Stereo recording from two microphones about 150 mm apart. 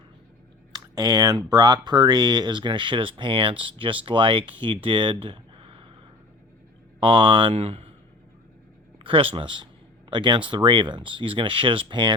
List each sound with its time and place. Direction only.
0.7 s speech: 25° right (ahead or behind)
7.0 s speech: 35° right (ahead or behind)
9.0 s speech: 35° right (ahead or behind)